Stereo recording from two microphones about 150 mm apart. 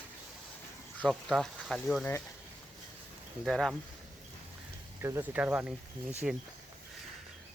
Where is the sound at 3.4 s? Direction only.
Centre (ahead or behind).